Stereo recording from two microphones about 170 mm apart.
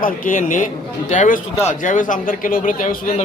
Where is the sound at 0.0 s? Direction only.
50° left (ahead or behind).